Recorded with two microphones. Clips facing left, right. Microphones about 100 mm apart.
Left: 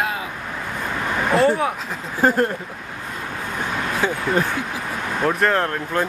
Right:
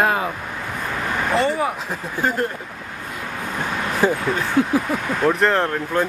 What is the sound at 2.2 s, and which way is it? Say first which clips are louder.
Speech: left 5 dB; 40° left (ahead or behind).